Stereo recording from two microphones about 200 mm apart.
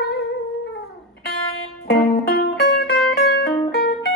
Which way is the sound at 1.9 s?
55° left (ahead or behind).